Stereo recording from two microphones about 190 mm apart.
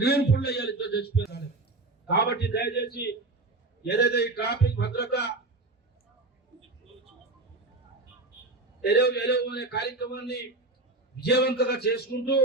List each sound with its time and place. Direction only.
0.0 s a sound: 55° left (ahead or behind)
2.0 s a man's voice: 60° left (ahead or behind)
8.8 s a man's voice: 60° left (ahead or behind)